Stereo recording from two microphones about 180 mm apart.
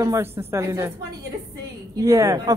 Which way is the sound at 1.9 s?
20° right (ahead or behind).